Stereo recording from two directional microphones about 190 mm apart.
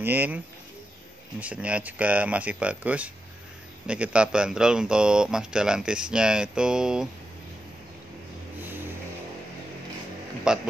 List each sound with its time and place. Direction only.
0.0 s speech: 10° right (ahead or behind)
1.4 s speech: 5° right (ahead or behind)
10.5 s speech: 5° right (ahead or behind)